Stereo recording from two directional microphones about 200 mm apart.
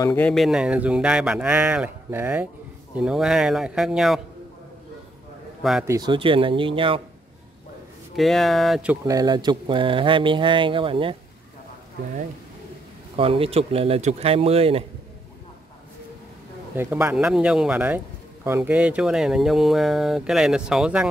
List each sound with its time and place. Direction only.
0.0 s a man's voice: 10° left (ahead or behind)
5.6 s a man's voice: centre (ahead or behind)
5.9 s speech: 20° right (ahead or behind)
8.2 s a man's voice: centre (ahead or behind)
9.0 s speech: 20° right (ahead or behind)
13.1 s speech: 30° right (ahead or behind)
16.7 s a man's voice: 10° right (ahead or behind)